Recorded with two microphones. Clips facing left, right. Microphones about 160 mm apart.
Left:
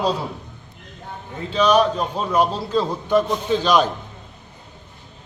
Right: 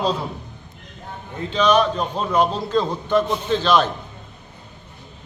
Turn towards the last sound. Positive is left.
turn(degrees=10)  # may be behind; listen again after turning